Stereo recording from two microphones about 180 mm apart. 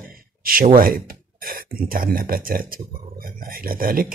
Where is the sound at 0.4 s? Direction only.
50° right (ahead or behind).